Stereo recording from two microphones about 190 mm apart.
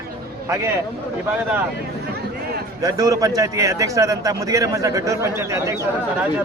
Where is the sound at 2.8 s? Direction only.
20° right (ahead or behind).